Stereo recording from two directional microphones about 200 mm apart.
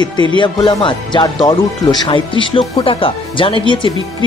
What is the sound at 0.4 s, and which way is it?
Speech, 25° left (ahead or behind).